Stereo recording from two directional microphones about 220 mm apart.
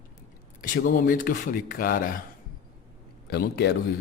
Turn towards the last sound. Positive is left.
turn(degrees=45)  # may be behind; listen again after turning